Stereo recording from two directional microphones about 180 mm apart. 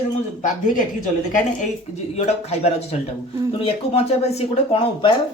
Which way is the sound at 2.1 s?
35° left (ahead or behind).